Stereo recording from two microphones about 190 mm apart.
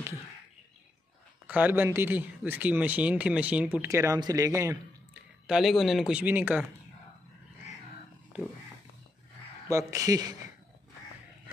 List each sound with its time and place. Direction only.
1.5 s speech: 10° right (ahead or behind)
5.5 s speech: centre (ahead or behind)
9.7 s speech: 15° right (ahead or behind)